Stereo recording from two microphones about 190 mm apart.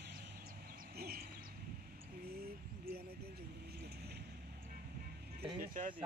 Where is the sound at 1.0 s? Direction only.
50° right (ahead or behind).